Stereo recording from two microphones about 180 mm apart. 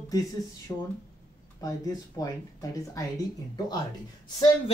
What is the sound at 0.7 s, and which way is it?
Speech, 20° left (ahead or behind).